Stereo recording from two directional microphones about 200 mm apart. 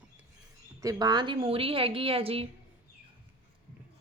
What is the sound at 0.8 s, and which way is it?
A woman's voice, 20° right (ahead or behind).